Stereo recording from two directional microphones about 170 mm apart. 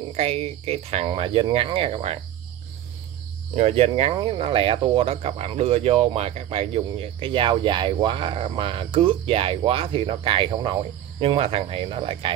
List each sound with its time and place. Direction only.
0.1 s speech: 35° right (ahead or behind)
3.5 s speech: 35° right (ahead or behind)